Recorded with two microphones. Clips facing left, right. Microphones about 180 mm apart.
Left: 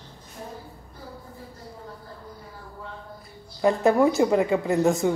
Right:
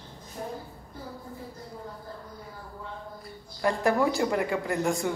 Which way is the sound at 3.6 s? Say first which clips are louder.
Left 5 dB; 20° left (ahead or behind).